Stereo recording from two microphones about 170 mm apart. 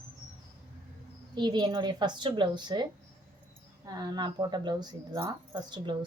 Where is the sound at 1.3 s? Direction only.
25° right (ahead or behind).